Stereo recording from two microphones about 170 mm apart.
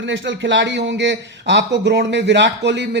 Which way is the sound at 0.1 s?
90° right.